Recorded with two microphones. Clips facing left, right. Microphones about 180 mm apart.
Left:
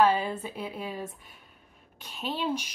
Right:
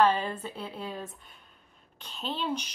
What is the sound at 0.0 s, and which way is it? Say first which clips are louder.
Speech: left 1 dB; 10° left (ahead or behind).